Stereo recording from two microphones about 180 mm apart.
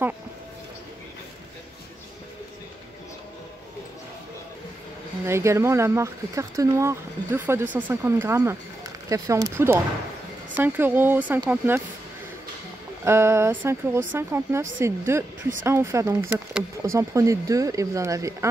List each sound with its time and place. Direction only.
5.2 s speech: 15° right (ahead or behind)
13.0 s speech: 15° right (ahead or behind)